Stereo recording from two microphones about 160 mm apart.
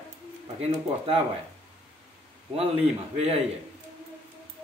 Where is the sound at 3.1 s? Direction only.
40° right (ahead or behind).